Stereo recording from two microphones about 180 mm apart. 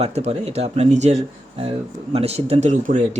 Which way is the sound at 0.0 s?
35° right (ahead or behind).